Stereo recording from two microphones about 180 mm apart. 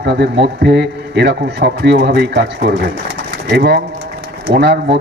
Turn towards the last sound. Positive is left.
turn(degrees=-65)  # may be behind; listen again after turning